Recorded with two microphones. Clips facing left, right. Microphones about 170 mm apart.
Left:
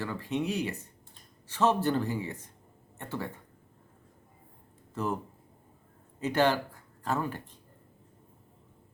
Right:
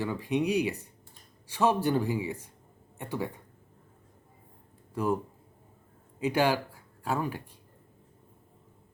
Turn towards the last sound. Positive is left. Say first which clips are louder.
# right 1 dB
turn(degrees=-10)  # may be behind; listen again after turning